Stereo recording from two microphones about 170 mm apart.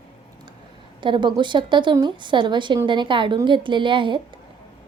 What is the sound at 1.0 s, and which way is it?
A woman's voice, 30° right (ahead or behind).